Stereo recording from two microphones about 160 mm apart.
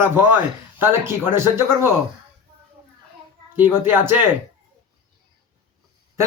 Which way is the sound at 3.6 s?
15° right (ahead or behind).